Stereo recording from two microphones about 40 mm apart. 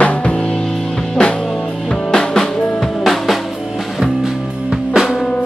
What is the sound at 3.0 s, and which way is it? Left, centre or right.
Drum, centre.